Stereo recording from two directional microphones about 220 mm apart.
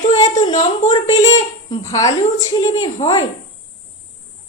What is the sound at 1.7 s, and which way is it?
A woman's voice, 15° left (ahead or behind).